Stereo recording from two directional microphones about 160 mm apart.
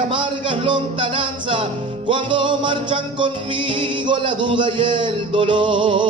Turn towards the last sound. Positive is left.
turn(degrees=-30)  # may be behind; listen again after turning